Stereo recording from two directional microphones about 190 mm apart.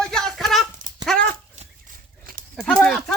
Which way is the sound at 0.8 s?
40° right (ahead or behind).